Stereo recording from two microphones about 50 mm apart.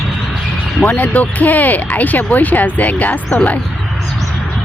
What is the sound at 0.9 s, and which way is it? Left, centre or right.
Speech, left.